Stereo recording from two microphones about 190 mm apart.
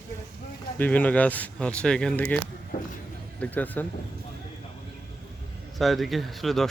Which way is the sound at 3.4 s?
10° left (ahead or behind).